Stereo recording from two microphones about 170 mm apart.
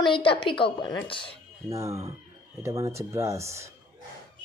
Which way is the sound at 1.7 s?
15° right (ahead or behind).